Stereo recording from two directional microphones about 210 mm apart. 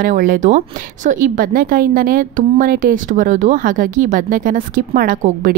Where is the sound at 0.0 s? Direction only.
40° right (ahead or behind).